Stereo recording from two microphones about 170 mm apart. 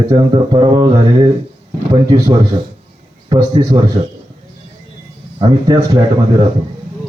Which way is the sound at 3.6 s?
25° right (ahead or behind).